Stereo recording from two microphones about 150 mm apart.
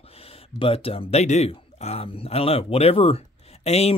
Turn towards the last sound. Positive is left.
turn(degrees=45)  # may be behind; listen again after turning